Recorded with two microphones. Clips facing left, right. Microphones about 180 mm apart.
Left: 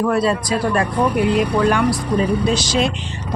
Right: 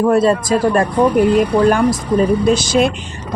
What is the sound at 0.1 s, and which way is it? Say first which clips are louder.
Speech: right 5 dB; 45° right (ahead or behind).